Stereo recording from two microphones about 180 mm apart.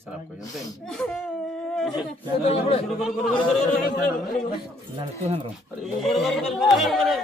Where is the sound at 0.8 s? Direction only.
5° left (ahead or behind).